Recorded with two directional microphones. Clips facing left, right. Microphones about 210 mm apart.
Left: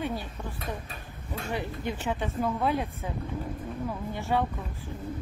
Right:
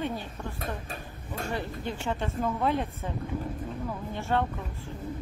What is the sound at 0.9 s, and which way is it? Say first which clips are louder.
Speech: right 1 dB; 45° right (ahead or behind).